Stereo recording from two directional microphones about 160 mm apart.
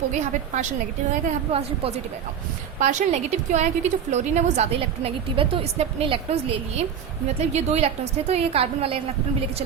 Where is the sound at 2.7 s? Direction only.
50° right (ahead or behind).